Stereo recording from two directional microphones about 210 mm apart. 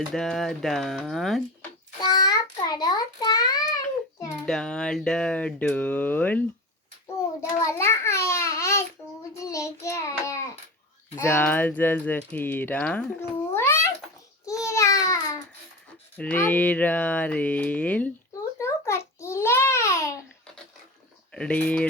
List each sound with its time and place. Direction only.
0.1 s speech: centre (ahead or behind)
2.0 s a sound: 20° left (ahead or behind)
4.4 s speech: 5° left (ahead or behind)
7.6 s a sound: 15° left (ahead or behind)
9.3 s child singing: 15° left (ahead or behind)
11.1 s speech: 10° left (ahead or behind)
14.4 s babbling: 15° left (ahead or behind)
16.1 s speech: 10° left (ahead or behind)
18.6 s a sound: 15° left (ahead or behind)
21.3 s speech: 5° left (ahead or behind)